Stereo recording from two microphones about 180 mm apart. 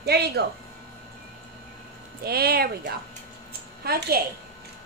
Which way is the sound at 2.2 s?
60° right (ahead or behind).